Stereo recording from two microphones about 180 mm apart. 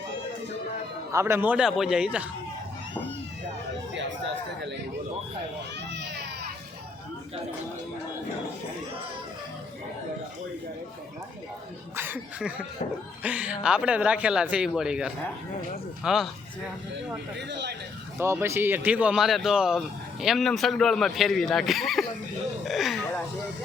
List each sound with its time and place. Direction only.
1.1 s speech: 15° right (ahead or behind)
5.9 s a sound: 70° right (ahead or behind)
11.9 s speech: 10° right (ahead or behind)
17.3 s speech: 70° right (ahead or behind)
18.2 s speech: 15° right (ahead or behind); by 23.2 s 5° left (ahead or behind)